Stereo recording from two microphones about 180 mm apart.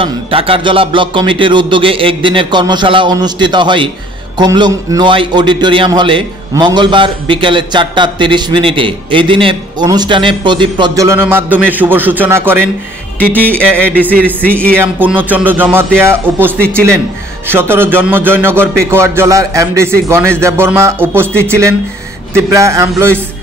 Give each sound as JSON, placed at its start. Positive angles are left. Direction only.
{"t": 0.0, "sound": "a man's voice", "side_deg": -30}
{"t": 13.2, "sound": "music", "side_deg": 10}
{"t": 14.8, "sound": "a man's voice", "side_deg": -10}
{"t": 16.5, "sound": "music", "side_deg": 5}
{"t": 17.5, "sound": "a man's voice", "side_deg": -10}
{"t": 22.3, "sound": "a man's voice", "side_deg": -15}